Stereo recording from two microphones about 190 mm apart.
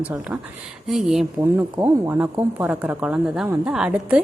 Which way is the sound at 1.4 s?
10° right (ahead or behind).